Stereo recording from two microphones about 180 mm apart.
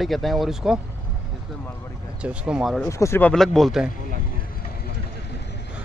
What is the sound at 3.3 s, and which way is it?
Speech, centre (ahead or behind).